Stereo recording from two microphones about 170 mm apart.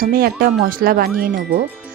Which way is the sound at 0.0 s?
55° right (ahead or behind).